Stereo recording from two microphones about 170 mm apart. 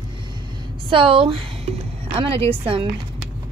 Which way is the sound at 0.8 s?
30° right (ahead or behind).